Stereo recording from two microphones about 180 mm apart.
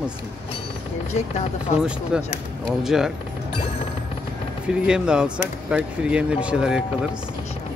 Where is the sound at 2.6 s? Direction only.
Centre (ahead or behind).